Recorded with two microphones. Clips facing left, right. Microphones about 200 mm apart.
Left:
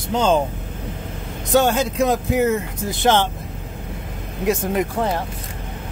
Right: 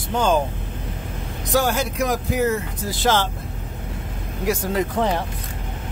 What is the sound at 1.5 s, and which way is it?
Speech, 20° left (ahead or behind).